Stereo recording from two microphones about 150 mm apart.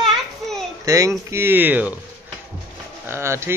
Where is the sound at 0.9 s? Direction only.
20° right (ahead or behind).